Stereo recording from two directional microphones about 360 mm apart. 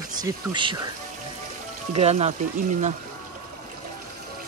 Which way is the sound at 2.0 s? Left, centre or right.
Centre.